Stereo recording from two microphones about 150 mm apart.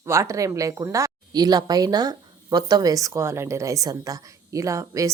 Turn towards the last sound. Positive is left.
turn(degrees=-20)  # may be behind; listen again after turning